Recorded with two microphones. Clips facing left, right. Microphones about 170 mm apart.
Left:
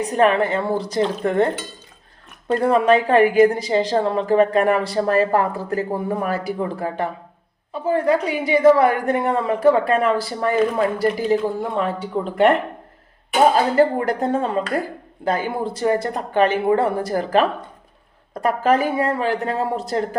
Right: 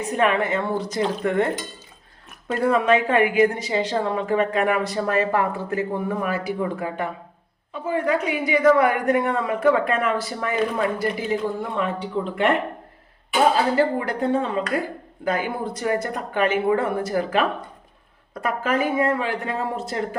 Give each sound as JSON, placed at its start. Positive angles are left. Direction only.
{"t": 0.0, "sound": "a woman's voice", "side_deg": 35}
{"t": 2.5, "sound": "a woman's voice", "side_deg": 35}
{"t": 13.7, "sound": "a woman's voice", "side_deg": 45}
{"t": 18.4, "sound": "a woman's voice", "side_deg": 35}